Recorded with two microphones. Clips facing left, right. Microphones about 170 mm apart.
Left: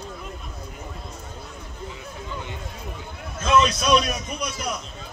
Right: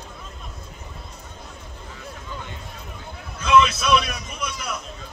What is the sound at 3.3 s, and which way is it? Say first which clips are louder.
A man's voice: right 2 dB; 45° left (ahead or behind).